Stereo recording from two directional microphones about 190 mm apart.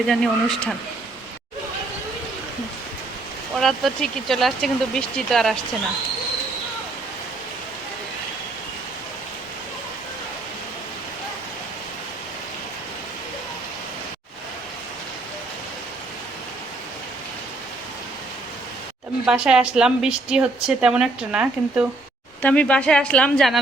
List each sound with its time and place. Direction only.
0.1 s a woman's voice: centre (ahead or behind)
3.5 s a woman's voice: centre (ahead or behind)
19.2 s a woman's voice: 5° right (ahead or behind)
22.4 s a woman's voice: 10° left (ahead or behind)